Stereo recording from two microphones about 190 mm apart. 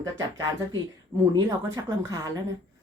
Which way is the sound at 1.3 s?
20° right (ahead or behind).